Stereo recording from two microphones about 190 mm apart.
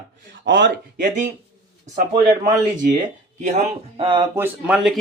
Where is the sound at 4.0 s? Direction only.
25° right (ahead or behind).